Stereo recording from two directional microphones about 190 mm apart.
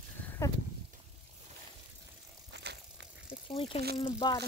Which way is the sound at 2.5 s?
60° right (ahead or behind).